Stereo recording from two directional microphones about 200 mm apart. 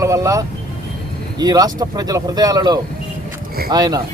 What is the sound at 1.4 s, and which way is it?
Speech, 20° right (ahead or behind).